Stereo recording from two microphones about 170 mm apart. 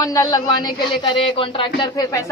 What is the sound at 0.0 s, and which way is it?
Speech, 20° left (ahead or behind).